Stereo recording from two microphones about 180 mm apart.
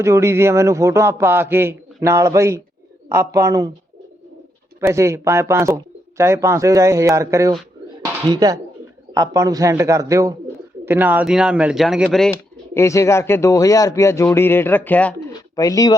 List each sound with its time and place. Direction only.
0.0 s speech: 15° right (ahead or behind)
4.8 s speech: 15° right (ahead or behind)
12.3 s speech: 15° left (ahead or behind)
15.3 s bird: 20° left (ahead or behind)